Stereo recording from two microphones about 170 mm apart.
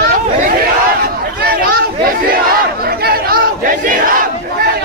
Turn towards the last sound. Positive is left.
turn(degrees=-55)  # may be behind; listen again after turning